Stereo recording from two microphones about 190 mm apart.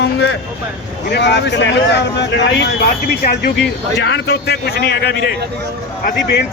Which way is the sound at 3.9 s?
65° left (ahead or behind).